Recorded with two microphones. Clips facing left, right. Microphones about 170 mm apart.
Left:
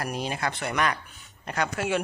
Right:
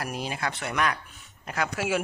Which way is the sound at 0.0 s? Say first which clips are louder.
Left 2 dB; centre (ahead or behind).